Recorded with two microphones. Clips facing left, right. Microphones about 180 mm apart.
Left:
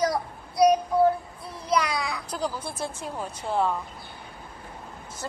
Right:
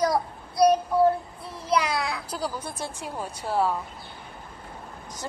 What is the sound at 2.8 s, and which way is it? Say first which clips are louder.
Speech: left 2 dB; 10° right (ahead or behind).